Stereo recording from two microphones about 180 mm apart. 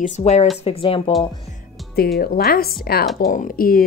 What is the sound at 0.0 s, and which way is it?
Speech, 40° left (ahead or behind).